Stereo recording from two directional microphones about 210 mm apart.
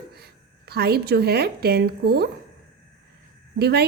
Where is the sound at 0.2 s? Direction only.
50° right (ahead or behind).